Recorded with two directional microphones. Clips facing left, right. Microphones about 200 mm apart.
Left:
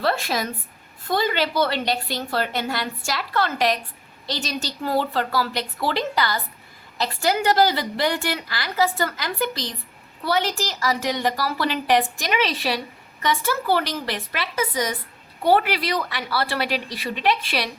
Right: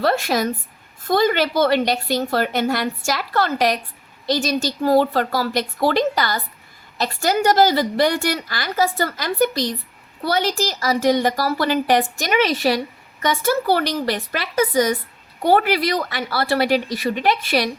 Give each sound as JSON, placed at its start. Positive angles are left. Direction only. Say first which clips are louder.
{"t": 0.0, "sound": "a woman's voice", "louder": "right 5 dB", "side_deg": -45}
{"t": 15.4, "sound": "a woman's voice", "louder": "right 3 dB", "side_deg": -45}